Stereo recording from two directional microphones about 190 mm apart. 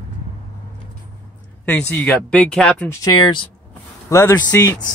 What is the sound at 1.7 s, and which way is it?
Speech, 10° left (ahead or behind).